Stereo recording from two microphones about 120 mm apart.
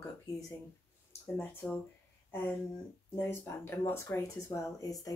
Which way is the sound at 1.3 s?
20° left (ahead or behind).